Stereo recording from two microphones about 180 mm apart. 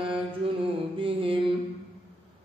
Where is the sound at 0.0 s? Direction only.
30° right (ahead or behind).